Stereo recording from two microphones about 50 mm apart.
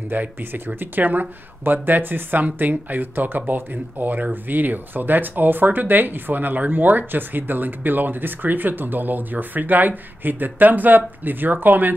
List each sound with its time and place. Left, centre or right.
0.1 s speech: right